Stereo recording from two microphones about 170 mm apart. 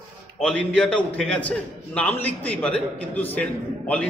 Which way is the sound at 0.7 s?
5° left (ahead or behind).